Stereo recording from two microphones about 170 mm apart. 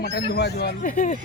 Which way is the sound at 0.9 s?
45° left (ahead or behind).